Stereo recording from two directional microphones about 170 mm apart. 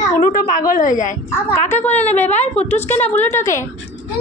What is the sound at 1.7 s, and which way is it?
A woman's voice, 10° left (ahead or behind).